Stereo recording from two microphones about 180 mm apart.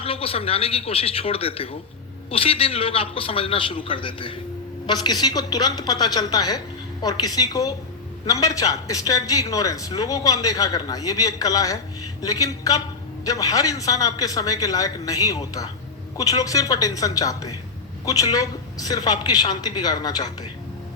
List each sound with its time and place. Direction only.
0.0 s a man's voice: 30° left (ahead or behind)